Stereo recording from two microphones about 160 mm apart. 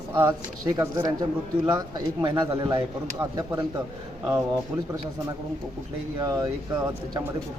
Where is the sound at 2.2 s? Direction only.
25° right (ahead or behind).